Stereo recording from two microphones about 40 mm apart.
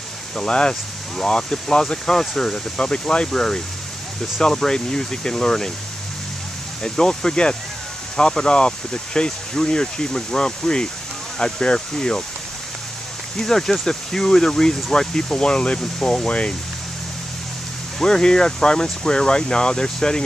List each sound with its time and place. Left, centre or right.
0.5 s speech: left
6.8 s speech: left
13.4 s speech: centre; by 16.5 s left
17.9 s speech: centre